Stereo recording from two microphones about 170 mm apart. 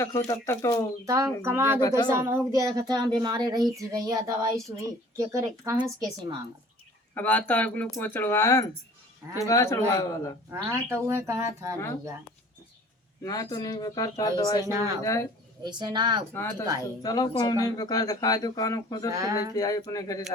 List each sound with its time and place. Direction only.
0.0 s speech: 15° left (ahead or behind)
1.0 s speech: 20° right (ahead or behind)
7.1 s speech: 10° left (ahead or behind)
10.5 s speech: 15° right (ahead or behind)
13.2 s speech: 20° left (ahead or behind)
15.6 s speech: 25° right (ahead or behind)
16.3 s speech: 15° left (ahead or behind)
19.1 s speech: 20° right (ahead or behind)
19.5 s speech: 20° left (ahead or behind)